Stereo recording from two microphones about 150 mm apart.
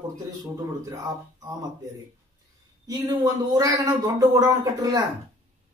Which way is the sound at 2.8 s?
20° right (ahead or behind).